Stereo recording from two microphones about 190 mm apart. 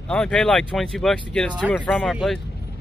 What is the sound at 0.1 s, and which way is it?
Speech, 5° left (ahead or behind).